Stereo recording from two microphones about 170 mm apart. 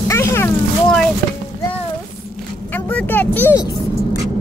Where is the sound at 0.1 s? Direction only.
15° left (ahead or behind).